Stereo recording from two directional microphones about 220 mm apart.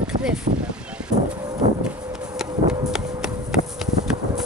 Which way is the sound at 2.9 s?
Centre (ahead or behind).